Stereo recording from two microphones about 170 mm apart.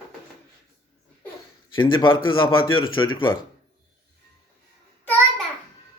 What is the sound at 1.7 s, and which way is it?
A man's voice, 30° left (ahead or behind).